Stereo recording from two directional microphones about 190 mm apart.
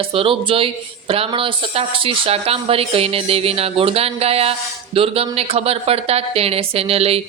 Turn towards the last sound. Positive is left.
turn(degrees=-30)  # may be behind; listen again after turning